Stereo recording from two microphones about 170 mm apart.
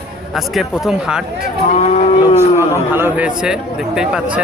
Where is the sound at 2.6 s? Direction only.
15° right (ahead or behind).